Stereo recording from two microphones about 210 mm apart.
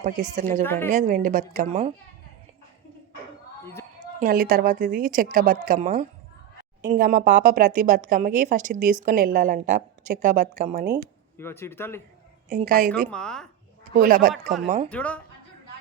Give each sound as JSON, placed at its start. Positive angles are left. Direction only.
{"t": 0.0, "sound": "speech", "side_deg": -35}
{"t": 0.6, "sound": "speech", "side_deg": 10}
{"t": 0.9, "sound": "speech", "side_deg": -40}
{"t": 3.6, "sound": "a sound", "side_deg": 10}
{"t": 4.2, "sound": "speech", "side_deg": -45}
{"t": 11.3, "sound": "speech", "side_deg": 10}
{"t": 12.5, "sound": "speech", "side_deg": -40}
{"t": 13.1, "sound": "speech", "side_deg": 5}
{"t": 14.0, "sound": "speech", "side_deg": -40}
{"t": 14.4, "sound": "speech", "side_deg": 0}